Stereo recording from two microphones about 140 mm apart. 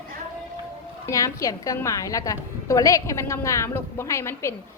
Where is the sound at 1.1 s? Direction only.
25° left (ahead or behind).